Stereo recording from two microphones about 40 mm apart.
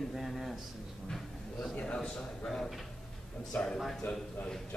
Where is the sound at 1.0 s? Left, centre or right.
Centre.